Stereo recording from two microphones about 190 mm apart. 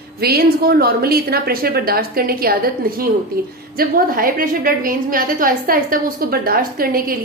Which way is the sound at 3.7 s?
50° right (ahead or behind).